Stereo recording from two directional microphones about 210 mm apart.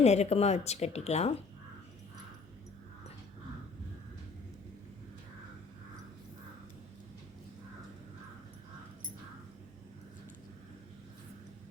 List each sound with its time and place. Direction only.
0.0 s speech: 30° left (ahead or behind)